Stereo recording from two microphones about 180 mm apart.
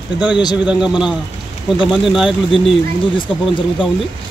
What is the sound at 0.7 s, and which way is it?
Speech, 5° right (ahead or behind).